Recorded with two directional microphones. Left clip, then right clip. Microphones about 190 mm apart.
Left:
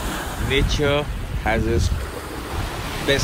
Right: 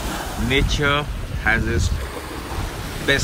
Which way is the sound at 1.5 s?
10° left (ahead or behind).